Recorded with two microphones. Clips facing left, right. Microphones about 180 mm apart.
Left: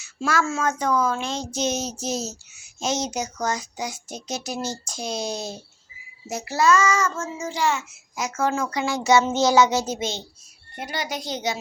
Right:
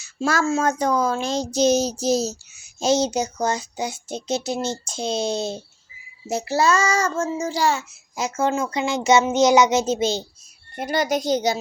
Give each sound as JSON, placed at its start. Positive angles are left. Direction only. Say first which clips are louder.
{"t": 0.0, "sound": "speech", "louder": "right 2 dB", "side_deg": -35}
{"t": 10.8, "sound": "a child's voice", "louder": "right 8 dB", "side_deg": -45}